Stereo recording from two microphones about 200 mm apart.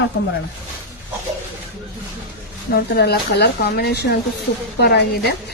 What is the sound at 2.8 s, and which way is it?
A woman's voice, 50° left (ahead or behind).